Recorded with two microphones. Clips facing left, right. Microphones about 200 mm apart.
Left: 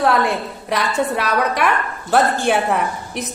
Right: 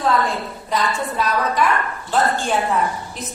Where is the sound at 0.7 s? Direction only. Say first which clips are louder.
Left 3 dB; 70° left (ahead or behind).